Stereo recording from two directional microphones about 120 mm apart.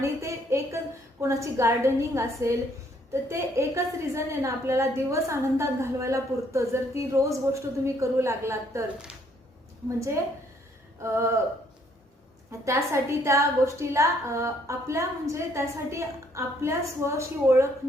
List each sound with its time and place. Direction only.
0.0 s a sound: 25° right (ahead or behind)
1.2 s a woman's voice: 25° right (ahead or behind)
11.0 s a woman's voice: 25° right (ahead or behind)
12.5 s a woman's voice: 25° right (ahead or behind)